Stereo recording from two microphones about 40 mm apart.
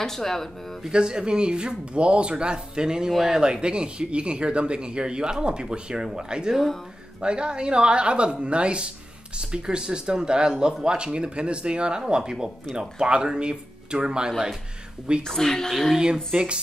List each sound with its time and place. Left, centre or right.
0.0 s a woman's voice: centre
0.8 s speech: centre
3.1 s speech: centre
3.3 s speech: centre
15.2 s a woman's voice: centre
15.7 s speech: centre
16.3 s speech: right